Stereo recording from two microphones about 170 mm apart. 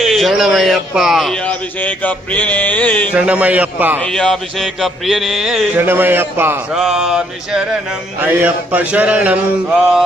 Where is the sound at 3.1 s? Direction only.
5° right (ahead or behind).